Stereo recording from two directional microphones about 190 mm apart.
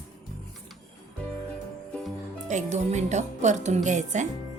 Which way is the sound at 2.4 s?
40° right (ahead or behind).